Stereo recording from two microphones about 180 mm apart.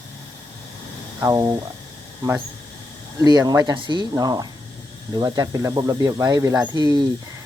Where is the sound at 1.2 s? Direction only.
15° right (ahead or behind).